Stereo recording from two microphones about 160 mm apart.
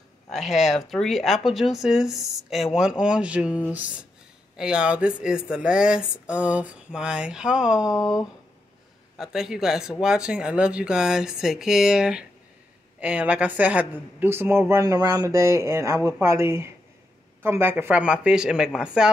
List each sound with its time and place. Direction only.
0.3 s a woman's voice: centre (ahead or behind)
9.2 s a woman's voice: 5° right (ahead or behind)